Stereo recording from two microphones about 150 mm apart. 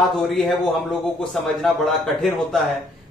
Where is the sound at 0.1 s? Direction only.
Centre (ahead or behind).